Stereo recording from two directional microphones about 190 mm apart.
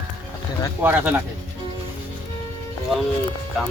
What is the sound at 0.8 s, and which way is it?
Speech, 10° right (ahead or behind).